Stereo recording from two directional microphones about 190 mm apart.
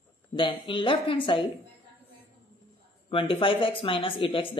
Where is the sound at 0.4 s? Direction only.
25° left (ahead or behind).